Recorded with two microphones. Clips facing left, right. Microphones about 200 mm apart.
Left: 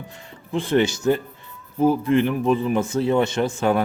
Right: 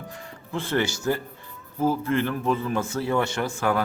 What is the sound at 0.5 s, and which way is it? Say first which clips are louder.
A man's voice: left 6 dB; 15° left (ahead or behind).